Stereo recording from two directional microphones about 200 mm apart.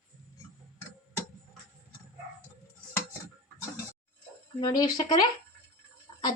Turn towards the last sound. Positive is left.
turn(degrees=25)  # may be behind; listen again after turning